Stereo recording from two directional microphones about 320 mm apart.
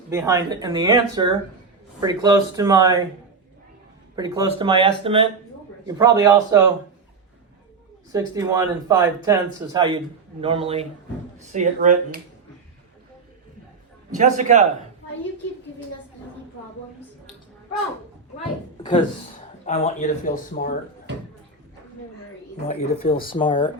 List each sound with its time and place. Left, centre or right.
0.1 s speech: centre
4.1 s speech: centre
8.1 s speech: centre
14.1 s speech: right
18.8 s speech: centre
22.7 s speech: centre